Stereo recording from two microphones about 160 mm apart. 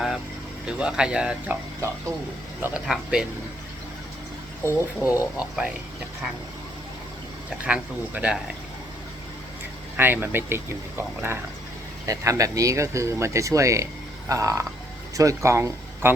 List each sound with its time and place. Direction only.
0.7 s speech: 5° right (ahead or behind)
2.6 s speech: 5° right (ahead or behind)
4.6 s speech: 20° left (ahead or behind)
5.4 s speech: 5° right (ahead or behind)
7.6 s speech: 10° right (ahead or behind)
10.0 s speech: 10° right (ahead or behind)